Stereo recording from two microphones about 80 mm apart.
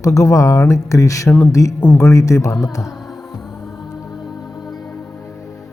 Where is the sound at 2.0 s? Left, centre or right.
Left.